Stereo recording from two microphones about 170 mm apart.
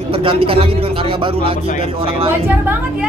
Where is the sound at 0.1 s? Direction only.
30° right (ahead or behind).